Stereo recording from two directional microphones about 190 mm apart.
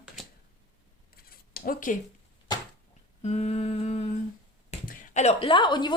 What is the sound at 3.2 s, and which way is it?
Humming, 35° left (ahead or behind).